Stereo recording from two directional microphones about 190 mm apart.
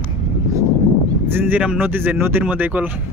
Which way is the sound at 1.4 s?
5° right (ahead or behind).